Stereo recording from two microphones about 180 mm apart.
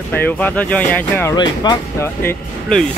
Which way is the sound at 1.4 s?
25° left (ahead or behind).